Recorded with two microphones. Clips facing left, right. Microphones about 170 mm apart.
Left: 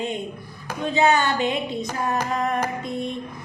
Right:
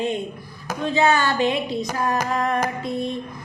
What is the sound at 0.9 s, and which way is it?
Speech, 20° left (ahead or behind).